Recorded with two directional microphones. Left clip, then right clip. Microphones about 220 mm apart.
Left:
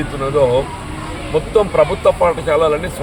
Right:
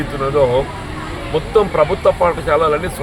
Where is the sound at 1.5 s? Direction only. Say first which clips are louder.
Even; centre (ahead or behind).